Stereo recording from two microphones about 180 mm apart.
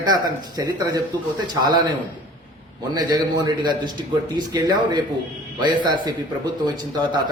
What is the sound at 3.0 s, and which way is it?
Speech, 20° right (ahead or behind).